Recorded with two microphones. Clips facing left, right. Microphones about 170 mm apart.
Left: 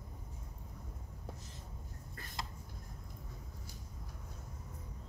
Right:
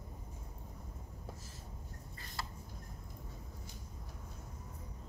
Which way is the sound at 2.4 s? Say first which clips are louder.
Even; 20° left (ahead or behind).